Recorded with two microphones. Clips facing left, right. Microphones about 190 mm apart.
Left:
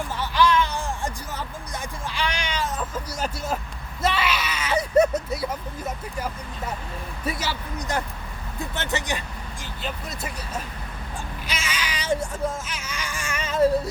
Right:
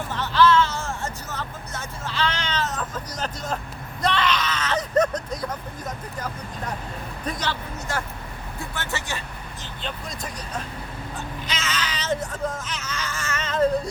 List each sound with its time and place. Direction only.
0.1 s music: 10° left (ahead or behind)
4.0 s speech: 5° left (ahead or behind)
9.8 s speech: 5° left (ahead or behind)